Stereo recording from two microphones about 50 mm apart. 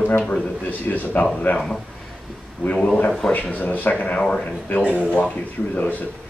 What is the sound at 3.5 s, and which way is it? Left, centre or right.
Speech, left.